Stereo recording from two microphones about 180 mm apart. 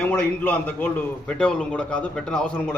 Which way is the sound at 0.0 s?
5° left (ahead or behind).